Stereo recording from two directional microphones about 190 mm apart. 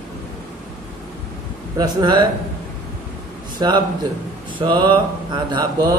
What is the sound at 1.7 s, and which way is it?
Speech, 20° right (ahead or behind).